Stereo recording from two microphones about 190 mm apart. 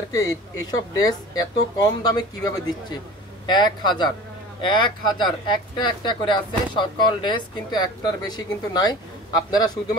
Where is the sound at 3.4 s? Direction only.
25° left (ahead or behind).